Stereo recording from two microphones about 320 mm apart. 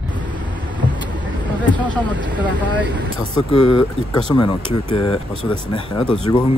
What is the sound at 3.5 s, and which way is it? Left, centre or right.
Speech, left.